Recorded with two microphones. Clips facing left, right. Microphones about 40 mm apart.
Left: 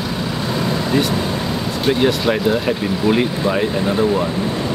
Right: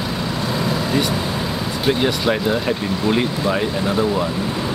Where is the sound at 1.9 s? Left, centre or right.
Centre.